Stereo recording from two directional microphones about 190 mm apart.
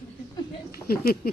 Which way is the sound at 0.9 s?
50° left (ahead or behind).